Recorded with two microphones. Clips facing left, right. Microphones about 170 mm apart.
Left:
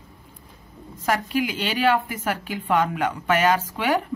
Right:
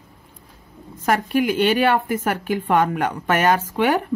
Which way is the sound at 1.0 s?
55° right (ahead or behind).